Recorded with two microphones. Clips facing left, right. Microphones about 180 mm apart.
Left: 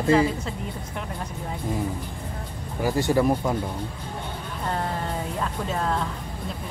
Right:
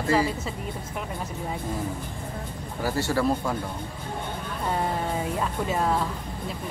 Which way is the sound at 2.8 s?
15° left (ahead or behind).